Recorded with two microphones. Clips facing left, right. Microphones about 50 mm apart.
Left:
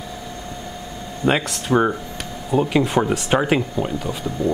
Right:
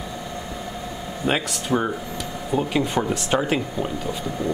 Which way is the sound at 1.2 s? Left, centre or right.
Centre.